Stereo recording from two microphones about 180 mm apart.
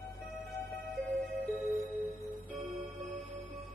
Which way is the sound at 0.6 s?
5° left (ahead or behind).